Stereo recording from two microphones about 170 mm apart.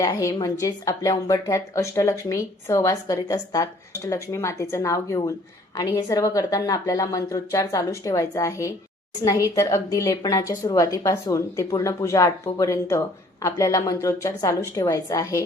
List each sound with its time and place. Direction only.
0.0 s a woman's voice: 20° left (ahead or behind)